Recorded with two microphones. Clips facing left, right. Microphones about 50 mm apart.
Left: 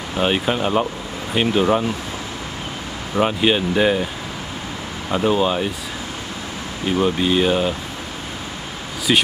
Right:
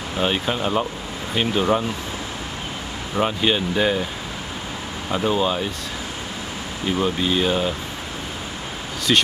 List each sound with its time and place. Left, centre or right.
0.2 s speech: centre
3.2 s speech: centre
5.1 s speech: centre
7.0 s speech: centre
9.1 s speech: centre